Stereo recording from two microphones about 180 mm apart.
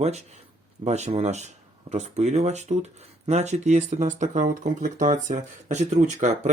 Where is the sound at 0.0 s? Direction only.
35° right (ahead or behind).